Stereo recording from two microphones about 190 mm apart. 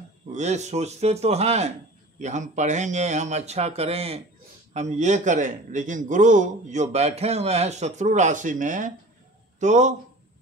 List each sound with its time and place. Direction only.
0.3 s a man's voice: 40° right (ahead or behind)